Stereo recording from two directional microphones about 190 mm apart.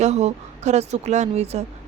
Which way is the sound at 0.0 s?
35° right (ahead or behind).